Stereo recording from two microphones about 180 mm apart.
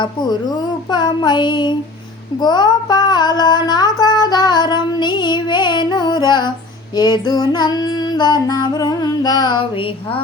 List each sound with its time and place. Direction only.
0.0 s child singing: 25° left (ahead or behind)